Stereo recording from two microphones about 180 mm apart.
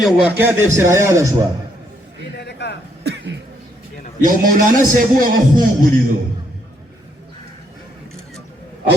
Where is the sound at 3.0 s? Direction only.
65° right (ahead or behind).